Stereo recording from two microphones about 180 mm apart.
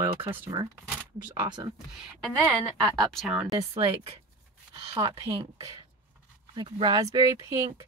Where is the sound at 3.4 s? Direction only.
20° right (ahead or behind).